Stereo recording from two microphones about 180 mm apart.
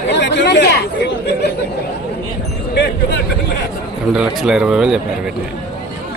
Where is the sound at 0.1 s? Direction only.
75° left (ahead or behind).